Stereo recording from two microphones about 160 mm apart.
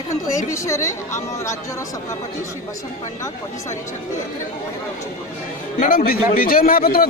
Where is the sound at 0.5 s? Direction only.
20° left (ahead or behind).